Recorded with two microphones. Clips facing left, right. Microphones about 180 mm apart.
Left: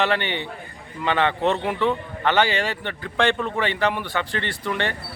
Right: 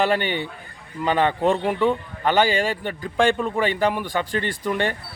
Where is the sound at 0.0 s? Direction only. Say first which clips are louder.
Right 2 dB; 45° right (ahead or behind).